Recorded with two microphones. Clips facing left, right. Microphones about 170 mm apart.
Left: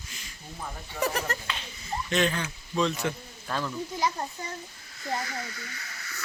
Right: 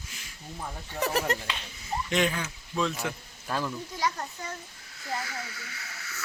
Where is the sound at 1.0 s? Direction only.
5° right (ahead or behind).